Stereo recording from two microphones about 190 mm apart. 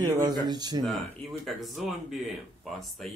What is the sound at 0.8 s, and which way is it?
Speech, centre (ahead or behind).